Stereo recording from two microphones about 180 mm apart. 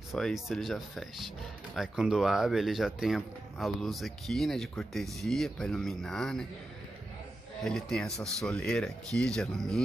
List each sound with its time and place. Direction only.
0.1 s speech: centre (ahead or behind)
7.6 s speech: 5° left (ahead or behind)